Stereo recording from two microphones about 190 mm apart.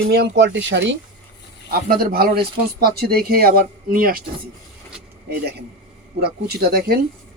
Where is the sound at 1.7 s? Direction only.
50° right (ahead or behind).